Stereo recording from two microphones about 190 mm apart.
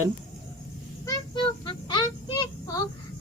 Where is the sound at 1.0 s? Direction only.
25° left (ahead or behind).